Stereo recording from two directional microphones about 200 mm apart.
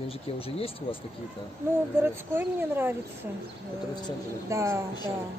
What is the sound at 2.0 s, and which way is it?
Speech, 10° right (ahead or behind).